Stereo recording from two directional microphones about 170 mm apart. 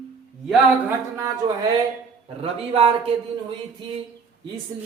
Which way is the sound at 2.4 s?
35° right (ahead or behind).